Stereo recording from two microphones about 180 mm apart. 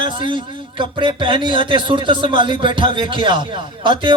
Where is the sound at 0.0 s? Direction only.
25° right (ahead or behind).